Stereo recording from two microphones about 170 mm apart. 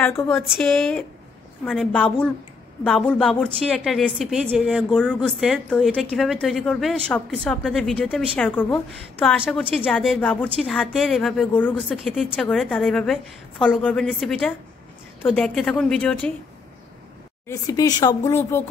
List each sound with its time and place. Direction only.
0.0 s speech: 15° left (ahead or behind)
0.3 s a woman's voice: centre (ahead or behind)
17.5 s speech: 20° left (ahead or behind)